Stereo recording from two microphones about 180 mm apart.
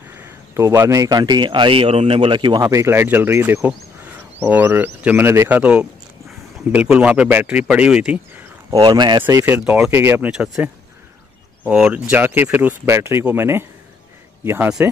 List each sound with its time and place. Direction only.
0.2 s speech: 15° right (ahead or behind)
9.2 s speech: 10° right (ahead or behind)